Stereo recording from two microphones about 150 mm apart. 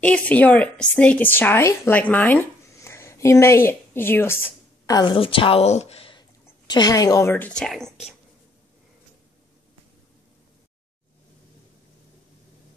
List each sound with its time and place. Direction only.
0.0 s a woman's voice: 10° left (ahead or behind); by 6.2 s 40° left (ahead or behind)
6.7 s a woman's voice: 25° left (ahead or behind); by 7.9 s 5° left (ahead or behind)